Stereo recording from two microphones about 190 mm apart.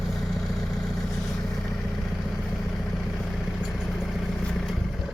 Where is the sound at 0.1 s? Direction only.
Centre (ahead or behind).